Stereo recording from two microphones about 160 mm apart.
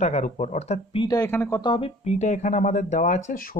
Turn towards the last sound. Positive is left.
turn(degrees=55)  # may be behind; listen again after turning